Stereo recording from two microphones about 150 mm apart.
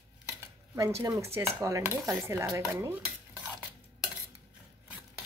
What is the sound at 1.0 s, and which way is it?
Speech, 20° right (ahead or behind).